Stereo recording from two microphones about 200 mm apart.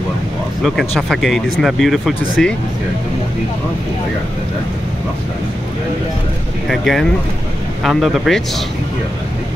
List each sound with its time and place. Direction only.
0.7 s speech: centre (ahead or behind)
6.7 s speech: centre (ahead or behind)